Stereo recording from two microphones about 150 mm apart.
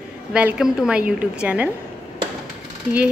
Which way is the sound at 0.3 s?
10° right (ahead or behind).